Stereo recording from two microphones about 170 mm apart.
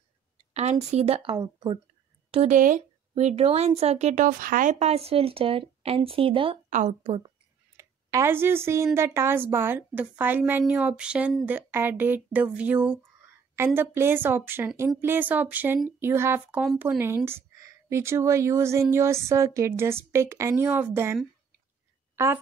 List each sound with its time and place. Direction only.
0.5 s speech: 40° right (ahead or behind)
2.3 s speech: 45° right (ahead or behind)
6.7 s speech: 45° right (ahead or behind)
7.7 s speech: 15° right (ahead or behind)
22.1 s a sound: 15° right (ahead or behind)